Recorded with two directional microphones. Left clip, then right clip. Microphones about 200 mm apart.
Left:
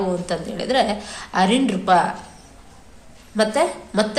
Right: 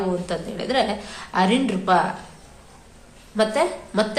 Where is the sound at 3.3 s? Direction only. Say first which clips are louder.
Left 1 dB; 10° left (ahead or behind).